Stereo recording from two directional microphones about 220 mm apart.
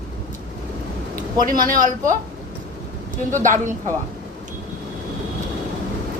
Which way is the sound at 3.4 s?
35° right (ahead or behind).